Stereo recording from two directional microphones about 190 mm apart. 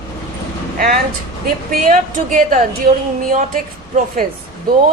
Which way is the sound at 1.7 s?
45° right (ahead or behind).